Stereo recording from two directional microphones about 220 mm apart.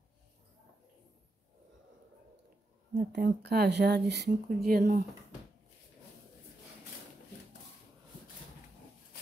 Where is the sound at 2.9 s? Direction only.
45° right (ahead or behind).